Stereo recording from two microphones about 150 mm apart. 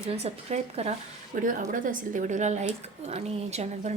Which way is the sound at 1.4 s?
65° right (ahead or behind).